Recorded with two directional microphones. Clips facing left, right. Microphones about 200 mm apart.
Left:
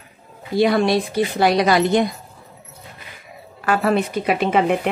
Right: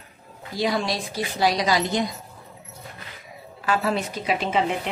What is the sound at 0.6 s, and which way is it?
A woman's voice, 60° left (ahead or behind).